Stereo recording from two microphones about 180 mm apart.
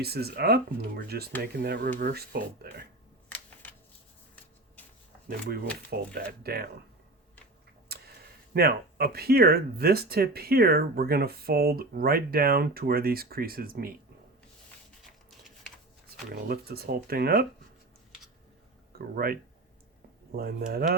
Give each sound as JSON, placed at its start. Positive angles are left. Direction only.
{"t": 0.0, "sound": "speech", "side_deg": -60}
{"t": 3.2, "sound": "a sound", "side_deg": 10}
{"t": 6.1, "sound": "speech", "side_deg": -60}
{"t": 7.9, "sound": "tick-tock", "side_deg": -60}
{"t": 8.5, "sound": "speech", "side_deg": -60}
{"t": 15.0, "sound": "a sound", "side_deg": 0}
{"t": 16.3, "sound": "speech", "side_deg": -60}
{"t": 18.9, "sound": "speech", "side_deg": -55}